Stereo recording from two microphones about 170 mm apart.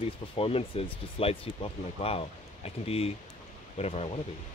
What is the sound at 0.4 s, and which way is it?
Speech, 35° left (ahead or behind).